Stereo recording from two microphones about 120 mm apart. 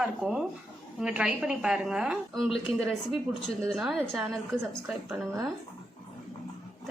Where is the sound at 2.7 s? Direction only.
55° left (ahead or behind).